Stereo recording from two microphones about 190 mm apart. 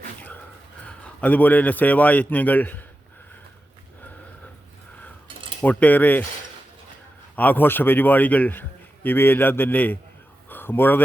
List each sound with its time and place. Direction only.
0.2 s dog: 10° left (ahead or behind)
0.9 s a man's voice: 5° left (ahead or behind)
5.6 s a man's voice: 10° left (ahead or behind)
7.3 s a man's voice: 10° left (ahead or behind)